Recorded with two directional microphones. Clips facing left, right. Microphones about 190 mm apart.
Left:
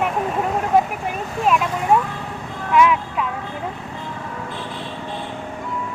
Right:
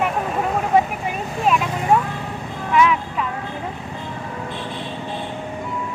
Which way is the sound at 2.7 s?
5° left (ahead or behind).